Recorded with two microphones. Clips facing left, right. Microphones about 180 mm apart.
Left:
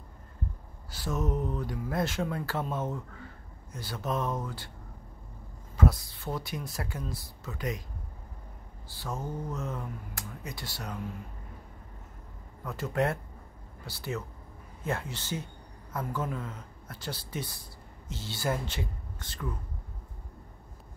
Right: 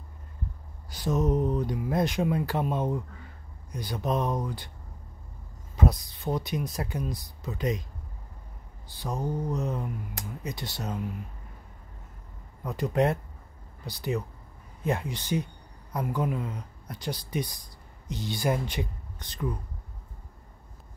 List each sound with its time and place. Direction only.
0.8 s speech: 20° right (ahead or behind)
5.8 s speech: 20° right (ahead or behind)
8.8 s speech: 20° right (ahead or behind)
12.6 s speech: 15° right (ahead or behind)